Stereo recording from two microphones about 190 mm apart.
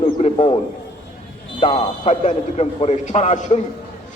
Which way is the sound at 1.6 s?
35° left (ahead or behind).